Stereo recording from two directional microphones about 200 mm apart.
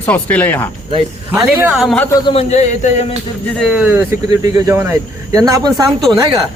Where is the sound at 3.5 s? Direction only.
Centre (ahead or behind).